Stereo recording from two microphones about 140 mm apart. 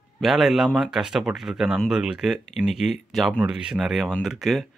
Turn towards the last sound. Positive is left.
turn(degrees=0)  # may be behind; listen again after turning